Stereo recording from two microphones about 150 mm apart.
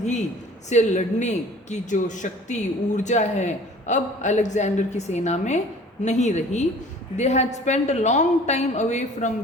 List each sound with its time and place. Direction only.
0.0 s a man's voice: 50° left (ahead or behind)